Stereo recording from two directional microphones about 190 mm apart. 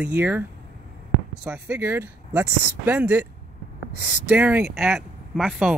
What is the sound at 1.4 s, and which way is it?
Speech, 5° right (ahead or behind).